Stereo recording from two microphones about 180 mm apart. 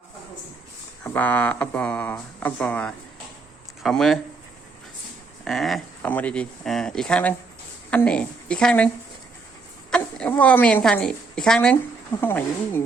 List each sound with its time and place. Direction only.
1.0 s speech: 10° left (ahead or behind)
5.5 s a woman's voice: centre (ahead or behind)
9.9 s a woman's voice: 5° left (ahead or behind)